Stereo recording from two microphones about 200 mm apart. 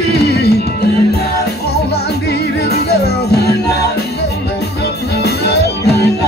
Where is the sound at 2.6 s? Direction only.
55° left (ahead or behind).